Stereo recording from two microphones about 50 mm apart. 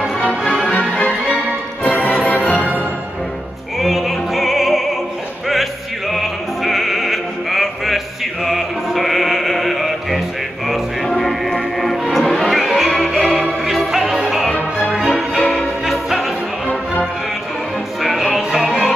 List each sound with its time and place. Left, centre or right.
0.9 s music: left
3.8 s opera: centre
5.5 s music: centre
18.0 s music: centre